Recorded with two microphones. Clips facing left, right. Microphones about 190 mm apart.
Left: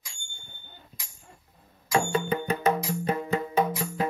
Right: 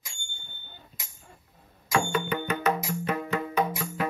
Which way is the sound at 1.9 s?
30° left (ahead or behind).